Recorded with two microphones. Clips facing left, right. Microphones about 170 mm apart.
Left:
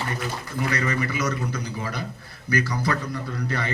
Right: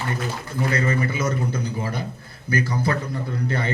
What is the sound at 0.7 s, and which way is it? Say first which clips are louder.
A man's voice: right 3 dB; 30° right (ahead or behind).